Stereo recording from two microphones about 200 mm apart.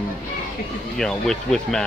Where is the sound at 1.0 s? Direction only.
5° left (ahead or behind).